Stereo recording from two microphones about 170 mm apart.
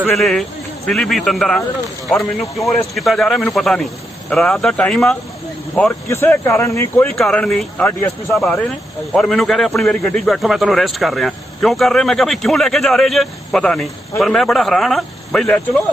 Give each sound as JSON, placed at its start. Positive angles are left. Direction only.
{"t": 0.1, "sound": "speech", "side_deg": 0}